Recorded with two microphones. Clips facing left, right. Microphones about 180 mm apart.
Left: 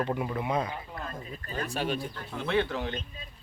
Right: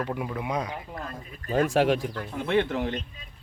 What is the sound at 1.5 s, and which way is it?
Speech, 90° right.